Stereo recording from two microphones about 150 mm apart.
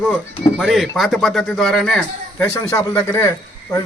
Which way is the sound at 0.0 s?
5° right (ahead or behind).